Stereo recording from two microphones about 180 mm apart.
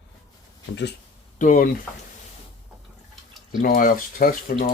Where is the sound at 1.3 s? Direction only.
45° left (ahead or behind).